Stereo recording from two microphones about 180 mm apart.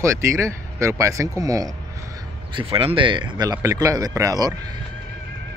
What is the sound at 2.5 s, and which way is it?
Speech, 30° right (ahead or behind).